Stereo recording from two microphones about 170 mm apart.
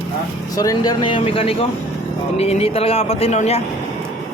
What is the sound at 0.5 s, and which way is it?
Speech, 20° left (ahead or behind).